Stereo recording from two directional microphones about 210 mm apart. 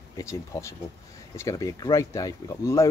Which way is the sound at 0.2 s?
15° left (ahead or behind).